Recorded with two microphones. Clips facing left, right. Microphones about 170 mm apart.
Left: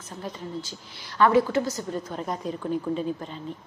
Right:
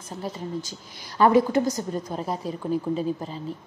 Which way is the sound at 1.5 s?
15° right (ahead or behind).